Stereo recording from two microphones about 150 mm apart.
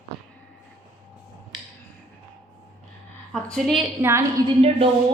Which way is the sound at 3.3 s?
5° left (ahead or behind).